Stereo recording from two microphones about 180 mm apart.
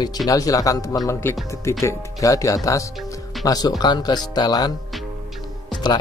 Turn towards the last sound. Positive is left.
turn(degrees=25)  # may be behind; listen again after turning